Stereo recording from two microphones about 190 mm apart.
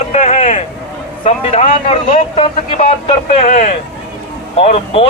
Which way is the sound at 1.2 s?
35° left (ahead or behind).